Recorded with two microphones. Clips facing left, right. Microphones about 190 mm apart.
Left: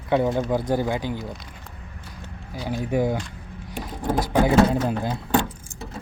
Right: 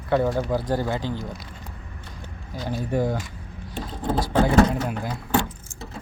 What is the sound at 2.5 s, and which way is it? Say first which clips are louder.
Speech: left 1 dB; 10° left (ahead or behind).